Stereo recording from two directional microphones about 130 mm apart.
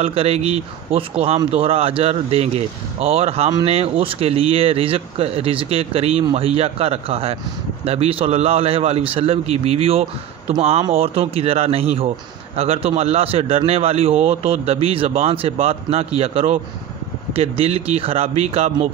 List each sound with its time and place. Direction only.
0.0 s speech: 50° right (ahead or behind)